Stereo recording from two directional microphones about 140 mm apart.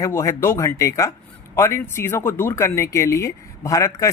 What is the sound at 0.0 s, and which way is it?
A man's voice, 20° left (ahead or behind).